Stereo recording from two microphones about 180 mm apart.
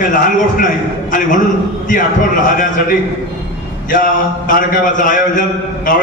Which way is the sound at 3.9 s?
50° left (ahead or behind).